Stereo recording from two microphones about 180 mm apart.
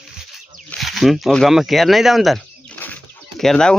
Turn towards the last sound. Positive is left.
turn(degrees=5)  # may be behind; listen again after turning